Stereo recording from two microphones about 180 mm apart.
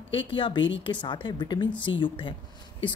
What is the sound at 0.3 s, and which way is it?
A woman's voice, 25° left (ahead or behind).